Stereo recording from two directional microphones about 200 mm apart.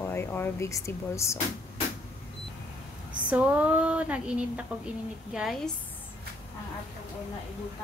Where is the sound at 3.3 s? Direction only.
5° right (ahead or behind).